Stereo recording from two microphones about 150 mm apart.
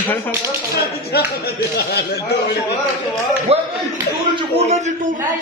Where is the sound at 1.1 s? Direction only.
90° left.